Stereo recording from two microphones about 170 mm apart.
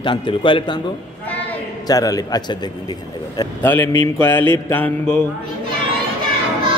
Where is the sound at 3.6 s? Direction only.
15° left (ahead or behind).